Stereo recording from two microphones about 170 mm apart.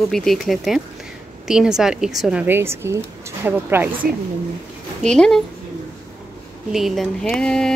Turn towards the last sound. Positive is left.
turn(degrees=5)  # may be behind; listen again after turning